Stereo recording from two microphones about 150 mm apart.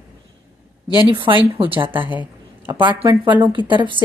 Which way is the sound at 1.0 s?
35° right (ahead or behind).